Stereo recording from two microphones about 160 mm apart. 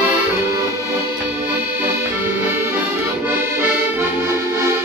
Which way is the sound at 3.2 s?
15° right (ahead or behind).